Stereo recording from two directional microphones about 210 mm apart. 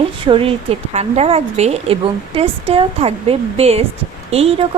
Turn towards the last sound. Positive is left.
turn(degrees=-30)  # may be behind; listen again after turning